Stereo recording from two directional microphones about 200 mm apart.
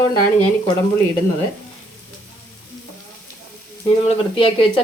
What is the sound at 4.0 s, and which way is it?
Speech, 25° left (ahead or behind).